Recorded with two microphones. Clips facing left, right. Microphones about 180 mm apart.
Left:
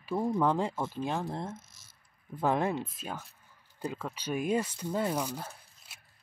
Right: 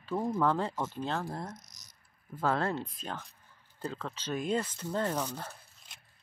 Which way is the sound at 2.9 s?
5° left (ahead or behind).